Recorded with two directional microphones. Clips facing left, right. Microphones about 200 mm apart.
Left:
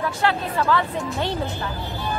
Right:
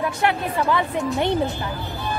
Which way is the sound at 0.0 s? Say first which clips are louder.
Right 1 dB; 15° right (ahead or behind).